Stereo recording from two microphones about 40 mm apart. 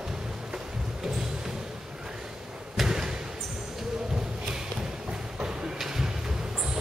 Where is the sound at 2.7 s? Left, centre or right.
Centre.